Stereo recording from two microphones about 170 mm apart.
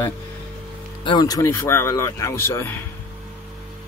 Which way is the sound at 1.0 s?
25° left (ahead or behind).